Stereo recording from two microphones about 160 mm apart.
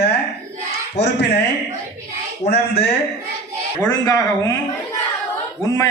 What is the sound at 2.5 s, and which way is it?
Speech, 90° left.